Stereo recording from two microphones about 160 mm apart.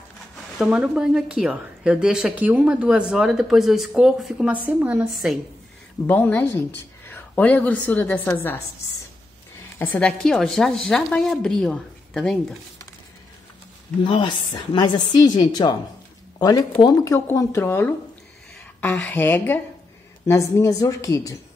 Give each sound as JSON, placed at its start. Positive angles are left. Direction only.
{"t": 0.6, "sound": "a woman's voice", "side_deg": -5}
{"t": 6.0, "sound": "a woman's voice", "side_deg": 10}
{"t": 9.8, "sound": "a woman's voice", "side_deg": 5}
{"t": 14.0, "sound": "a woman's voice", "side_deg": 30}